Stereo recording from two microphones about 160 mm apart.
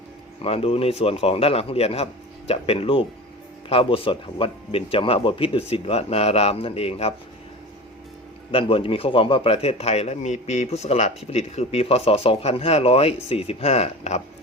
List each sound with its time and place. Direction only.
0.4 s speech: 40° left (ahead or behind)
8.5 s speech: 35° left (ahead or behind)